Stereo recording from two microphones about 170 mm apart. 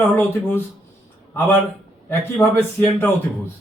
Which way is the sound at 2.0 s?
10° left (ahead or behind).